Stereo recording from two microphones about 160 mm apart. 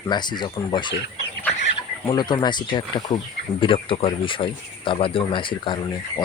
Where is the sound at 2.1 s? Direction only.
25° left (ahead or behind).